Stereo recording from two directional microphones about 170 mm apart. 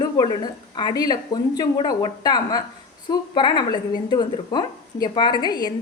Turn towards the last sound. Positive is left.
turn(degrees=25)  # may be behind; listen again after turning